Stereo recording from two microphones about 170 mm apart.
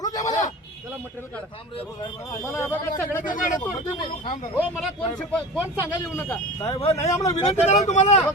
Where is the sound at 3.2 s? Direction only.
50° left (ahead or behind).